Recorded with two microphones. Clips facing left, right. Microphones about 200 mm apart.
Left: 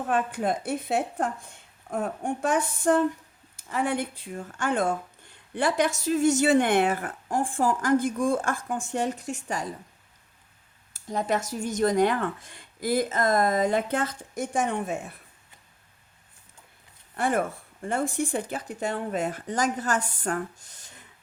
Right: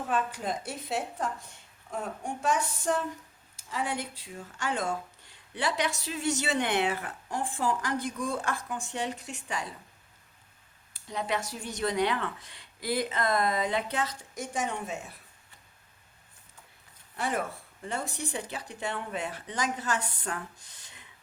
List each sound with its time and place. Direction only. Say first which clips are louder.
0.1 s a woman's voice: left 5 dB; 55° left (ahead or behind)
10.9 s speech: left 5 dB; 45° left (ahead or behind)
17.2 s speech: left 6 dB; 50° left (ahead or behind)